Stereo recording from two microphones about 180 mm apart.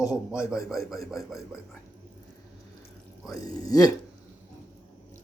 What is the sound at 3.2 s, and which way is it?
Speech, 20° left (ahead or behind).